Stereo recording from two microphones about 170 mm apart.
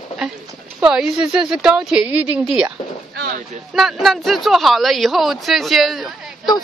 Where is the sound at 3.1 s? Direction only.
70° right (ahead or behind).